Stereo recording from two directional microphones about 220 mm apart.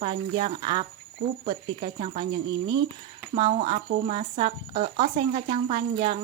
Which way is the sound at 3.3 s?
25° right (ahead or behind).